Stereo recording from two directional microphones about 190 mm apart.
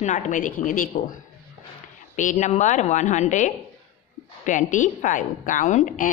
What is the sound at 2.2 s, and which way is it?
A woman's voice, 40° left (ahead or behind).